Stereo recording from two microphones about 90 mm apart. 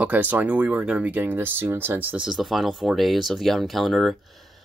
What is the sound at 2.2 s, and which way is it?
Speech, centre (ahead or behind).